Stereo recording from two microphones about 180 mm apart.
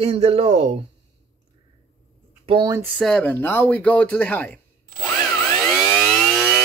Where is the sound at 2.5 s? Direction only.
25° right (ahead or behind).